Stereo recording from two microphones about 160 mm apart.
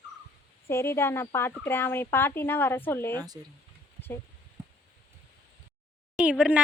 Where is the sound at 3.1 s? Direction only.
25° right (ahead or behind).